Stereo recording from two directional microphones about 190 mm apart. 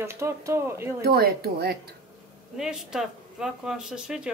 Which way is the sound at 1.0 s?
55° right (ahead or behind).